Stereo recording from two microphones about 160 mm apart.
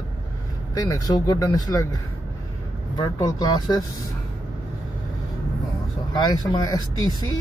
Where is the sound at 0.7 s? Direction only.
20° left (ahead or behind).